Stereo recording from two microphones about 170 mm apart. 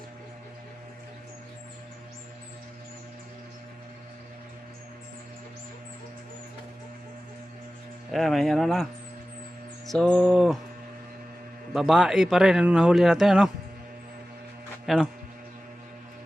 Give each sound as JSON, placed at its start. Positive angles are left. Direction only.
{"t": 8.1, "sound": "speech", "side_deg": 0}
{"t": 11.7, "sound": "speech", "side_deg": 0}
{"t": 14.9, "sound": "speech", "side_deg": 0}